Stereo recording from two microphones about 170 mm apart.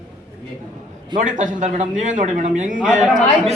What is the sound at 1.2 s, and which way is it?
Speech, 50° right (ahead or behind).